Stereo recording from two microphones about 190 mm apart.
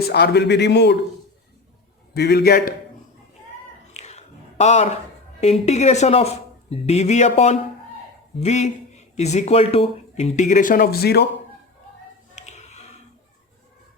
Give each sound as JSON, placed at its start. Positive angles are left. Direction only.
{"t": 0.1, "sound": "a man's voice", "side_deg": 60}
{"t": 2.1, "sound": "a man's voice", "side_deg": 60}
{"t": 3.9, "sound": "a sound", "side_deg": 35}
{"t": 5.4, "sound": "speech", "side_deg": 35}
{"t": 12.4, "sound": "music", "side_deg": 35}